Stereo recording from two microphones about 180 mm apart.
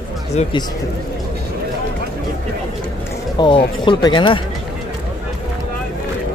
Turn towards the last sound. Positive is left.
turn(degrees=25)  # may be behind; listen again after turning